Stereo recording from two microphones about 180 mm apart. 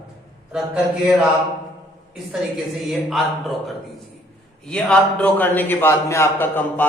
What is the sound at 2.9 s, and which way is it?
Speech, centre (ahead or behind).